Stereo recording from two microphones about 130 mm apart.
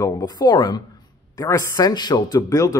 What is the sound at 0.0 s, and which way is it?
Speech, 30° left (ahead or behind).